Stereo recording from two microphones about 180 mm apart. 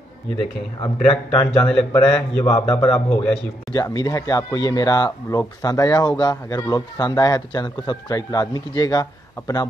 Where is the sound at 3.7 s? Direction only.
20° left (ahead or behind).